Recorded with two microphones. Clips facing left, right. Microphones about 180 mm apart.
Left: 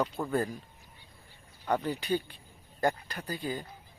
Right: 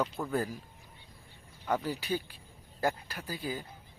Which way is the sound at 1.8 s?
5° right (ahead or behind).